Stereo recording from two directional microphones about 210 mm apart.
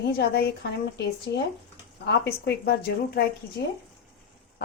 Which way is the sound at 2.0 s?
50° left (ahead or behind).